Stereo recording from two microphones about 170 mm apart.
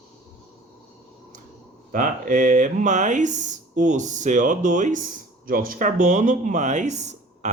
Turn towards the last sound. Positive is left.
turn(degrees=-45)  # may be behind; listen again after turning